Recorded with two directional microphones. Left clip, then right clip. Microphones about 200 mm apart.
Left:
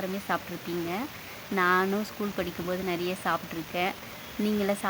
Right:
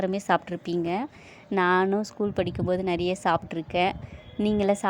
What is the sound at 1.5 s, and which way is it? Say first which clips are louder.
Speech: right 2 dB; 20° right (ahead or behind).